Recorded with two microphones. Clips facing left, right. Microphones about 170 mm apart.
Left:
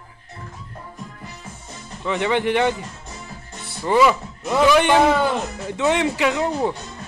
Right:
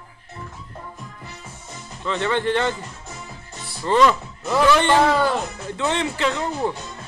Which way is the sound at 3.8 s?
10° left (ahead or behind).